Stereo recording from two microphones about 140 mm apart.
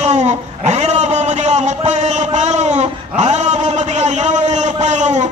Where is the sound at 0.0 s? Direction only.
55° right (ahead or behind).